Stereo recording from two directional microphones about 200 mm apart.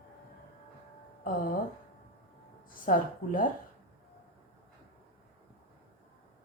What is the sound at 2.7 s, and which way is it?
Speech, 45° left (ahead or behind).